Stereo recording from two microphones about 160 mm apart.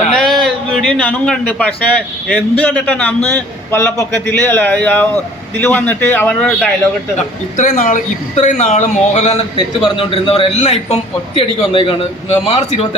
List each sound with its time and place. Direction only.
0.1 s a man's voice: centre (ahead or behind)
7.5 s a man's voice: 55° left (ahead or behind); by 13.0 s 35° left (ahead or behind)